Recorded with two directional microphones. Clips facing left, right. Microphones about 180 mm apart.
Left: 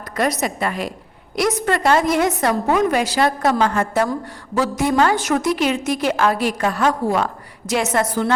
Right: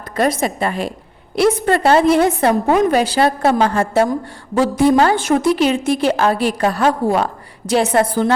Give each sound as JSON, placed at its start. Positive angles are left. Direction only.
{"t": 0.2, "sound": "a woman's voice", "side_deg": -30}